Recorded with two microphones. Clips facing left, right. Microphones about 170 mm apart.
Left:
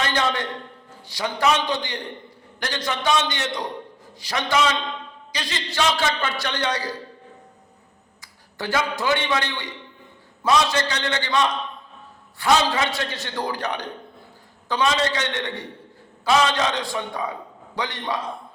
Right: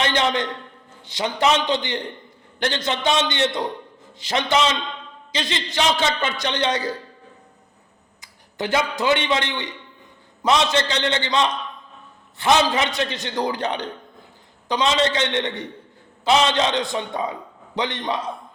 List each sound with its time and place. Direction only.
0.0 s a man's voice: 20° right (ahead or behind)
8.2 s a man's voice: 20° right (ahead or behind)